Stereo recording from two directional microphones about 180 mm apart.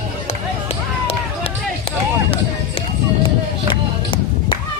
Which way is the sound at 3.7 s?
30° left (ahead or behind).